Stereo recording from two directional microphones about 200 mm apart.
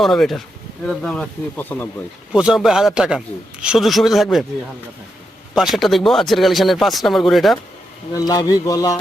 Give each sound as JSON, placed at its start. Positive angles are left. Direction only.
{"t": 0.0, "sound": "a man's voice", "side_deg": 0}
{"t": 2.3, "sound": "a man's voice", "side_deg": -5}
{"t": 5.5, "sound": "a man's voice", "side_deg": 0}
{"t": 8.3, "sound": "speech", "side_deg": 20}